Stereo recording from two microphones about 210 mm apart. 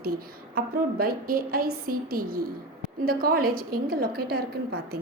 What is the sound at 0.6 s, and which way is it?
A woman's voice, 45° right (ahead or behind).